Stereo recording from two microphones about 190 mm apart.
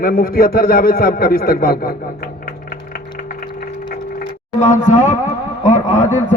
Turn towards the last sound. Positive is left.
turn(degrees=40)  # may be behind; listen again after turning